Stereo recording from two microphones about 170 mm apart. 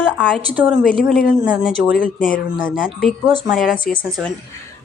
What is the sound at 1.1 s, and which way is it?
Speech, 55° left (ahead or behind).